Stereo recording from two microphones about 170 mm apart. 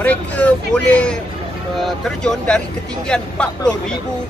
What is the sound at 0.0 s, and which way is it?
Speech, 10° left (ahead or behind).